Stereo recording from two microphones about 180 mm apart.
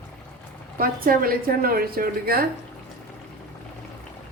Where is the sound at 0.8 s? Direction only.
55° right (ahead or behind).